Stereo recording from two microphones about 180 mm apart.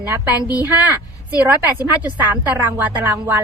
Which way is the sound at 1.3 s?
10° right (ahead or behind).